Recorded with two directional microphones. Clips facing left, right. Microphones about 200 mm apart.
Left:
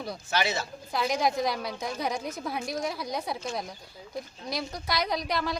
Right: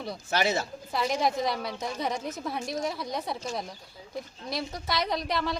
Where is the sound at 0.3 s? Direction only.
50° right (ahead or behind).